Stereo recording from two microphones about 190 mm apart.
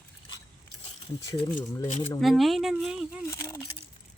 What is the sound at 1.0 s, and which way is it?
Speech, 20° left (ahead or behind).